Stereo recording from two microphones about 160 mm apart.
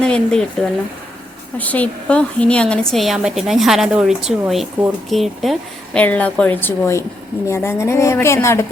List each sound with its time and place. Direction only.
0.0 s speech: 5° left (ahead or behind)
1.5 s a woman's voice: 10° left (ahead or behind)